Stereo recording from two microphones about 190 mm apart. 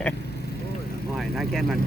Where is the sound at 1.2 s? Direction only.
Centre (ahead or behind).